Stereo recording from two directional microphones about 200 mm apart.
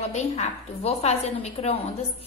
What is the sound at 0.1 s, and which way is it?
A woman's voice, 30° left (ahead or behind).